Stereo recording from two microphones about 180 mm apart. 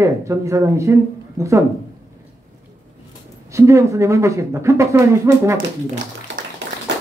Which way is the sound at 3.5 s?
15° right (ahead or behind).